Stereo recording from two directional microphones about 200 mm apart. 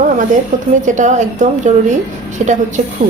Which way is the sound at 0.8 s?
40° right (ahead or behind).